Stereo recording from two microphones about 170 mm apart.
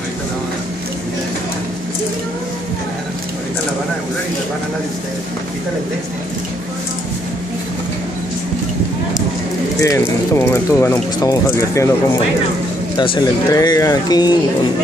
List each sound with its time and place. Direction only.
9.8 s speech: 20° left (ahead or behind)
12.9 s speech: 30° left (ahead or behind)